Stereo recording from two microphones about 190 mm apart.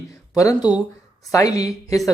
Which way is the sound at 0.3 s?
20° left (ahead or behind).